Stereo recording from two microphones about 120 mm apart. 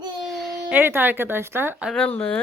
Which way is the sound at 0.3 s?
Centre (ahead or behind).